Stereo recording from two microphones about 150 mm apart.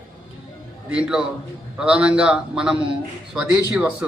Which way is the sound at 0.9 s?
5° right (ahead or behind).